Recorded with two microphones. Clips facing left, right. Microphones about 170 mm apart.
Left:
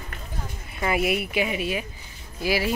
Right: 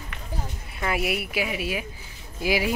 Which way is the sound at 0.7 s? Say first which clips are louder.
Left 3 dB; centre (ahead or behind).